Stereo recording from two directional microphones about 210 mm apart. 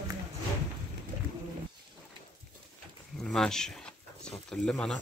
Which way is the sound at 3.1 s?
Centre (ahead or behind).